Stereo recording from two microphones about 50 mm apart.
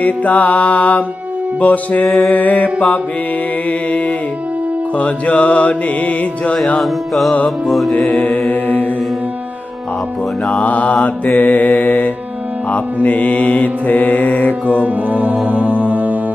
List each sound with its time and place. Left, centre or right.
0.0 s music: left
2.0 s music: centre
2.3 s mantra: left
4.9 s music: left
6.8 s music: centre
8.2 s music: left
10.6 s music: left
11.3 s mantra: left
14.7 s music: right